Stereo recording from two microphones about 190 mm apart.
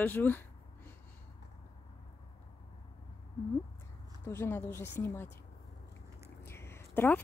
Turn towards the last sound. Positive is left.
turn(degrees=10)  # may be behind; listen again after turning